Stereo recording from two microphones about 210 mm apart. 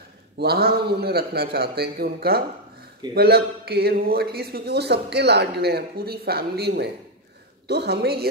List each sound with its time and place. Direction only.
0.4 s a man's voice: 50° right (ahead or behind)